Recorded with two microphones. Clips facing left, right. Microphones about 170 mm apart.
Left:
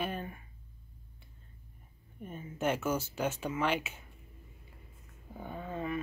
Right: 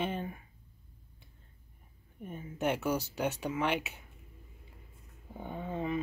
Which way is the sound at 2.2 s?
15° right (ahead or behind).